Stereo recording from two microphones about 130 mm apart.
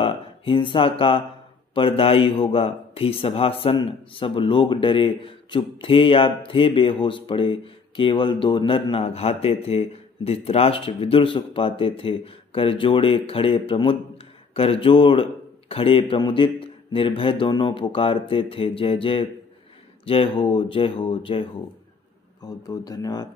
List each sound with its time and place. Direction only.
0.0 s speech: 40° left (ahead or behind)
22.4 s speech: 30° left (ahead or behind)